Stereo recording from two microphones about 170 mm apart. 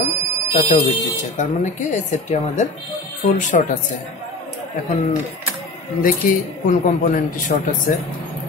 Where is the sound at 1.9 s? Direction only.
45° left (ahead or behind).